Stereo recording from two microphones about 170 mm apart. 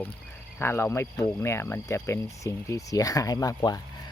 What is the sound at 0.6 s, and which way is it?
Speech, 15° left (ahead or behind).